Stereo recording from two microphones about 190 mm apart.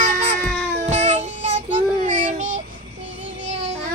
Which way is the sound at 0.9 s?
35° right (ahead or behind).